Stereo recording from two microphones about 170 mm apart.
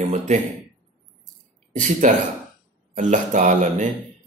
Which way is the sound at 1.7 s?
45° right (ahead or behind).